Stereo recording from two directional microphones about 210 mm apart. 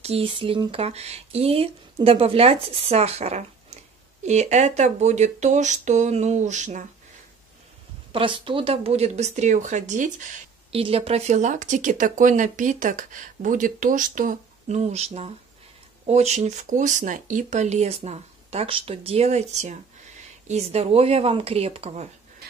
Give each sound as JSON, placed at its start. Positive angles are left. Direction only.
{"t": 0.0, "sound": "speech", "side_deg": -25}
{"t": 8.1, "sound": "speech", "side_deg": -25}